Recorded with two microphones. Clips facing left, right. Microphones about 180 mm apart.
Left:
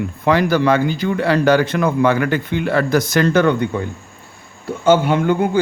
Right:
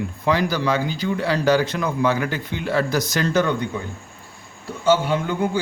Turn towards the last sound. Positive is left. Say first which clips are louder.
# left 5 dB
turn(degrees=60)  # may be behind; listen again after turning